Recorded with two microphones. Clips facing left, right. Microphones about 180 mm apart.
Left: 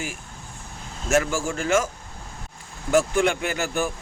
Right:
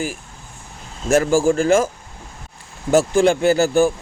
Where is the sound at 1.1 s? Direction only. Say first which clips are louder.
Right 8 dB; 35° right (ahead or behind).